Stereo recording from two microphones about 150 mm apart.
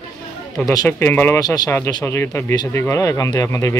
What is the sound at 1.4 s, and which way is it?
Speech, 25° left (ahead or behind).